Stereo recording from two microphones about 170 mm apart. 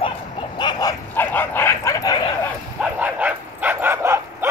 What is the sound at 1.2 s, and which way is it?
Bow-wow, 10° left (ahead or behind).